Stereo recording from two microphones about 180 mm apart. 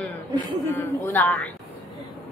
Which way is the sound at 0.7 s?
10° left (ahead or behind).